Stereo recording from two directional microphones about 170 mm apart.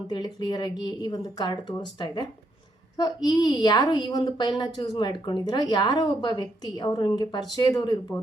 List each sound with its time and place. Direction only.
0.1 s a woman's voice: 25° left (ahead or behind)